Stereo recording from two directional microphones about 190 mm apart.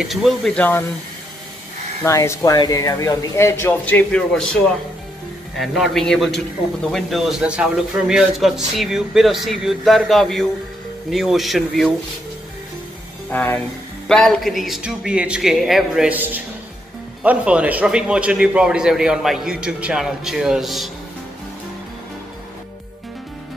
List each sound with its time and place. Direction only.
0.0 s a man's voice: centre (ahead or behind)
2.0 s speech: 15° left (ahead or behind)
5.6 s a man's voice: centre (ahead or behind)
13.3 s a man's voice: 10° left (ahead or behind)